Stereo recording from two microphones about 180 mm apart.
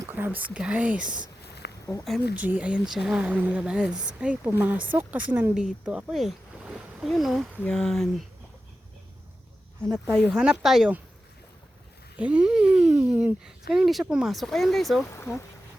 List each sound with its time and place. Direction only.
0.0 s a sound: 10° right (ahead or behind)
0.5 s speech: 5° right (ahead or behind)
1.6 s a sound: 70° left (ahead or behind)
2.3 s speech: 10° right (ahead or behind)
9.8 s speech: 5° left (ahead or behind)
12.1 s speech: 10° right (ahead or behind)
15.1 s speech: 15° left (ahead or behind)